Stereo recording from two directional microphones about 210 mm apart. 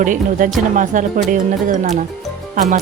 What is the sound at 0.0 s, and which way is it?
Speech, 40° right (ahead or behind).